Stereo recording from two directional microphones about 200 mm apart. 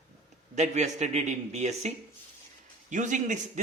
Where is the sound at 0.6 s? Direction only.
35° right (ahead or behind).